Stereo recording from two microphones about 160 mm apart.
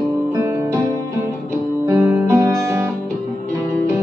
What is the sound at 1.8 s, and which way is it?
Music, 20° right (ahead or behind).